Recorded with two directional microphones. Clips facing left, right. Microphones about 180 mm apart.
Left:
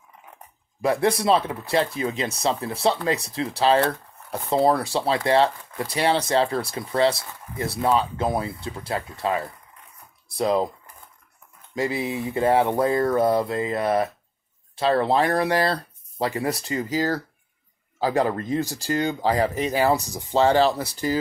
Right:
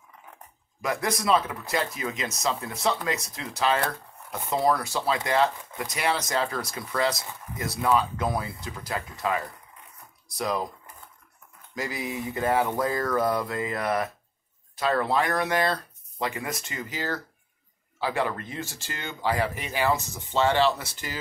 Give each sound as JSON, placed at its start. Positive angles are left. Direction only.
{"t": 0.8, "sound": "speech", "side_deg": 30}
{"t": 11.7, "sound": "speech", "side_deg": 30}